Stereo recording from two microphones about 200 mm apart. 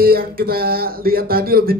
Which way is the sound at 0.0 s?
50° right (ahead or behind).